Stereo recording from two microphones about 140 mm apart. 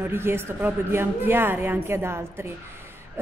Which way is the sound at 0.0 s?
15° right (ahead or behind).